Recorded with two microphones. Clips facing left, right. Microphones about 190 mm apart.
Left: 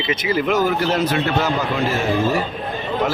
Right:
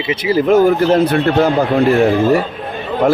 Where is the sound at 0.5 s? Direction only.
55° right (ahead or behind).